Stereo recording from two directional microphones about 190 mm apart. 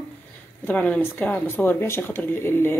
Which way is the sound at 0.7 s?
10° left (ahead or behind).